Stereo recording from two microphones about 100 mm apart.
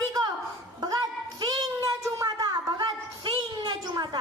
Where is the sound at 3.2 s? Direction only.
50° right (ahead or behind).